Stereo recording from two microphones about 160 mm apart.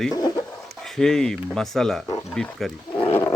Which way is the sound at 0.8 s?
5° left (ahead or behind).